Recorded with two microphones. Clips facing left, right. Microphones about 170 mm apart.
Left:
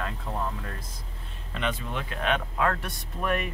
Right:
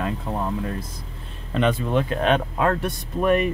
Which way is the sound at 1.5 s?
40° right (ahead or behind).